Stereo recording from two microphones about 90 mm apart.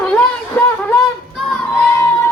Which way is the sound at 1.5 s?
5° left (ahead or behind).